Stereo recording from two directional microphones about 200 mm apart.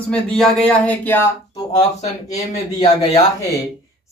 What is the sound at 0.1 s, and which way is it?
Speech, 5° left (ahead or behind).